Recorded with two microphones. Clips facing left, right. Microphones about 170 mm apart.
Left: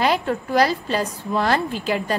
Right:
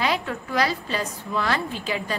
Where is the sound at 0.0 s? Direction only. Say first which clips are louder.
Left 5 dB; 45° left (ahead or behind).